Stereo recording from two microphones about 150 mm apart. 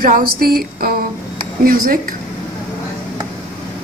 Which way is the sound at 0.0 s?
75° right (ahead or behind).